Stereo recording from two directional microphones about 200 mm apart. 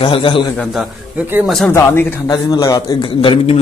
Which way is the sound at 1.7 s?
15° left (ahead or behind).